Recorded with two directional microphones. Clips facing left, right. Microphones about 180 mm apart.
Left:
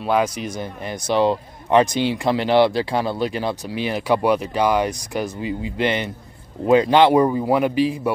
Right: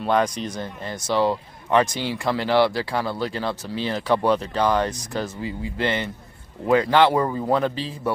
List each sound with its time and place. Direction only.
0.0 s speech: 5° left (ahead or behind)